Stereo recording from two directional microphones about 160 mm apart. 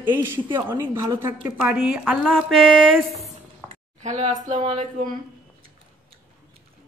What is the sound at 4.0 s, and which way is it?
Speech, 50° right (ahead or behind).